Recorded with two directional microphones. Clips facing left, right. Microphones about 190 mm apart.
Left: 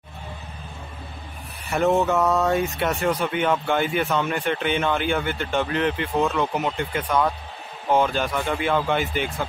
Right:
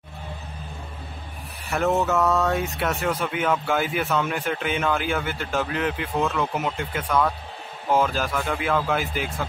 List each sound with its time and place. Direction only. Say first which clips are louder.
1.7 s speech: left 2 dB; centre (ahead or behind)